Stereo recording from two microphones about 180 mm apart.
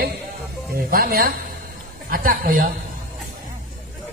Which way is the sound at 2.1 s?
55° right (ahead or behind).